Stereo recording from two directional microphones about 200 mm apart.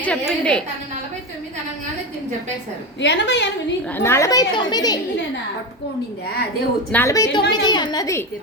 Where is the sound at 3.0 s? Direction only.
60° left (ahead or behind).